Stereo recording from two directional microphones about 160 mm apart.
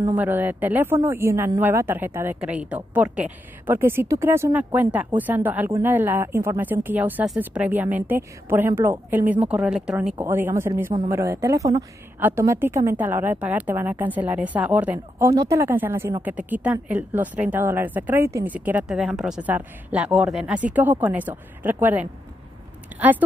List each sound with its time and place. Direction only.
0.1 s a woman's voice: 10° right (ahead or behind)